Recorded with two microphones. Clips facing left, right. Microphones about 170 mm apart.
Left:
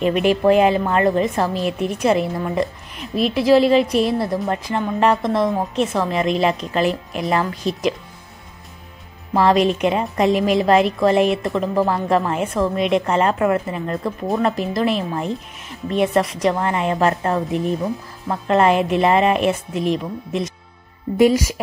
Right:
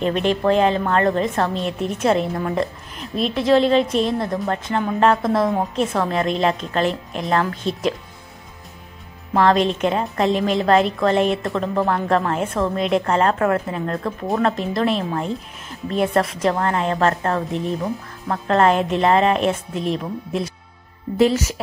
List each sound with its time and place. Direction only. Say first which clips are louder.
0.0 s a woman's voice: left 3 dB; 5° left (ahead or behind)
9.3 s a woman's voice: left 1 dB; 5° left (ahead or behind)